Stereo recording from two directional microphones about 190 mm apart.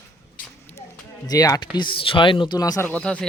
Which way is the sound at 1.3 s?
20° left (ahead or behind).